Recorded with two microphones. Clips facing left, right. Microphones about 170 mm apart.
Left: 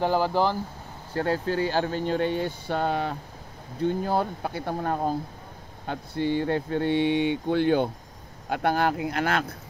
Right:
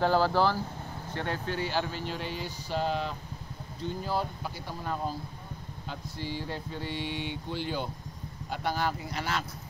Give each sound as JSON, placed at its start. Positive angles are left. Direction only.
{"t": 0.0, "sound": "speech", "side_deg": 15}
{"t": 1.1, "sound": "speech", "side_deg": 40}